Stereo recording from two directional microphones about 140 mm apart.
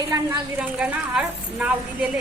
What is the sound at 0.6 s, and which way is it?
A woman's voice, 5° right (ahead or behind).